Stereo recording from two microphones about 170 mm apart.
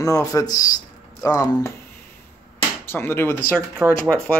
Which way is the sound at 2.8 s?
15° left (ahead or behind).